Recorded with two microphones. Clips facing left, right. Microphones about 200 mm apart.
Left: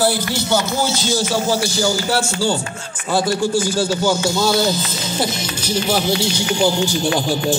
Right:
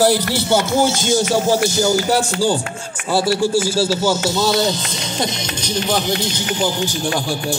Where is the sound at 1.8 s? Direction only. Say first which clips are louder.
Right 3 dB; 20° right (ahead or behind).